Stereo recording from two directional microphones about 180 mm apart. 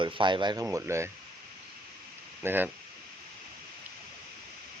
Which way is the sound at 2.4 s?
10° right (ahead or behind).